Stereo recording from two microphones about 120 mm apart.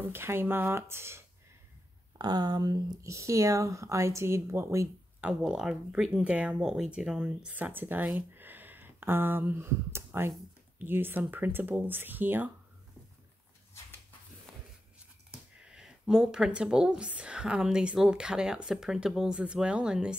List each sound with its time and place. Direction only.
0.1 s speech: 20° right (ahead or behind)
2.1 s speech: 35° right (ahead or behind)
5.2 s speech: 5° right (ahead or behind)
14.5 s writing: 5° right (ahead or behind)
15.7 s speech: 5° right (ahead or behind)